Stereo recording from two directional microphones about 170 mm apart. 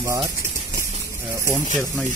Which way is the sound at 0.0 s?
20° right (ahead or behind).